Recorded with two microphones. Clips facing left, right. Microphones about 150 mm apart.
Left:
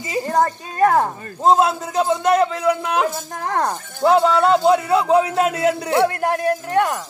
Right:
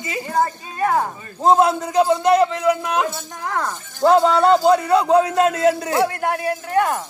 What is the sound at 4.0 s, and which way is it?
Speech, centre (ahead or behind).